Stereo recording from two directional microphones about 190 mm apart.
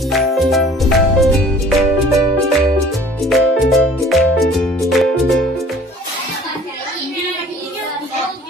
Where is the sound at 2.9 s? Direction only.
Centre (ahead or behind).